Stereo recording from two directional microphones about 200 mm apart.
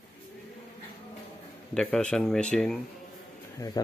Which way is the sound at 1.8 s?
5° left (ahead or behind).